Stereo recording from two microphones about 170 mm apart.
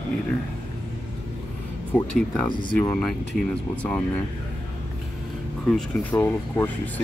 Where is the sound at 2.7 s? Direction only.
10° left (ahead or behind).